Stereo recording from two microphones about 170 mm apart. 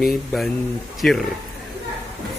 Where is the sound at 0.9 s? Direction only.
Centre (ahead or behind).